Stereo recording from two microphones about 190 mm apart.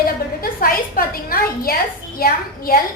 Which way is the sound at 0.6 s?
50° left (ahead or behind).